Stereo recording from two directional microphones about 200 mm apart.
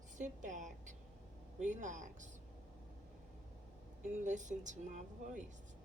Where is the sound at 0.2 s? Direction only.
40° right (ahead or behind).